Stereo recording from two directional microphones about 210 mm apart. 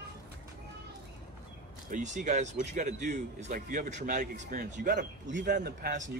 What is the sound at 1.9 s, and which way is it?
Speech, 35° right (ahead or behind).